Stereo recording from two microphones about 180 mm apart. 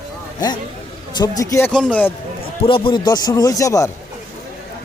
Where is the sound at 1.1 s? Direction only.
20° left (ahead or behind).